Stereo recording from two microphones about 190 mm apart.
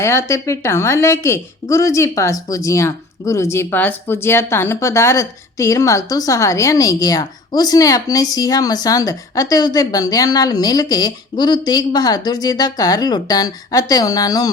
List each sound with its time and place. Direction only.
0.0 s speech: 15° left (ahead or behind)